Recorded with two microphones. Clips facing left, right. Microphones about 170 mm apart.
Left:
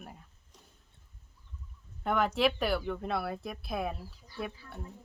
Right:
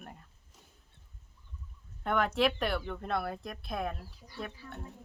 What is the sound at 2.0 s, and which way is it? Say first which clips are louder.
Speech: left 1 dB; centre (ahead or behind).